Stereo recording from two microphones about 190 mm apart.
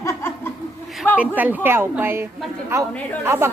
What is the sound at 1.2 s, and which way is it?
A woman's voice, 10° right (ahead or behind).